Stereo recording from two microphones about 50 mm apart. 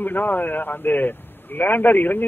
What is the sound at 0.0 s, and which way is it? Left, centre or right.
A man's voice, left.